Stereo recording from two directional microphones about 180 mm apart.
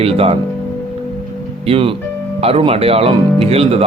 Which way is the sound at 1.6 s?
30° right (ahead or behind).